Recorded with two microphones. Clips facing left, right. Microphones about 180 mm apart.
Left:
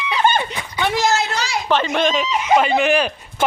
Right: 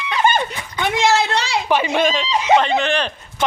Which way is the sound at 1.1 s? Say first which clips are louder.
Right 3 dB; 30° right (ahead or behind).